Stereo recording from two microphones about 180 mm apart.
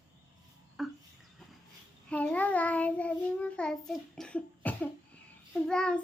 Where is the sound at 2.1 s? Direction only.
5° left (ahead or behind).